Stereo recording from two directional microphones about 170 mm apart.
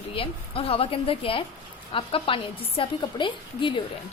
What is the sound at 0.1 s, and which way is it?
A woman's voice, 35° left (ahead or behind).